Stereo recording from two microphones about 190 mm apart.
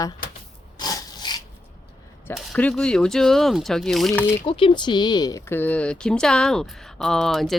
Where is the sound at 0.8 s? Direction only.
20° left (ahead or behind).